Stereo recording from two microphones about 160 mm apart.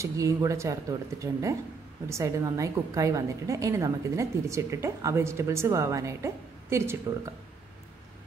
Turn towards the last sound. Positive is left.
turn(degrees=-15)  # may be behind; listen again after turning